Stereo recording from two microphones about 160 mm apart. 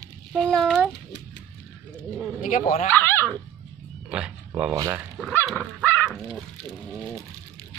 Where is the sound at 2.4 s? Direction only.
55° left (ahead or behind).